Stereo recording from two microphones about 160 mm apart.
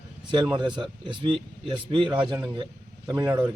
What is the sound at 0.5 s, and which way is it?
Speech, 30° right (ahead or behind).